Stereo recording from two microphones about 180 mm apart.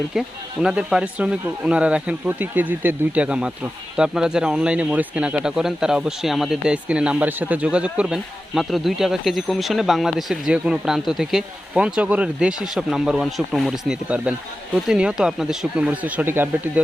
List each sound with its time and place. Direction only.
0.1 s speech: 5° right (ahead or behind)